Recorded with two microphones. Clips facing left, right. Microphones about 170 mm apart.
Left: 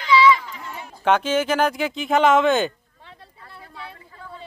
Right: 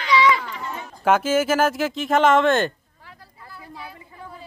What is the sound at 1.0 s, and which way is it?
Speech, 5° right (ahead or behind).